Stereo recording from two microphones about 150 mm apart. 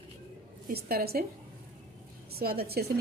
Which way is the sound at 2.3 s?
90° right.